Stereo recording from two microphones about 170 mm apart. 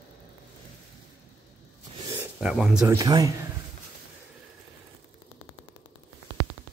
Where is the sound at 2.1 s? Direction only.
5° right (ahead or behind).